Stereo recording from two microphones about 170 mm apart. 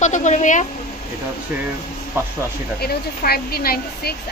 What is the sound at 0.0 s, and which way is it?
Speech, 45° left (ahead or behind).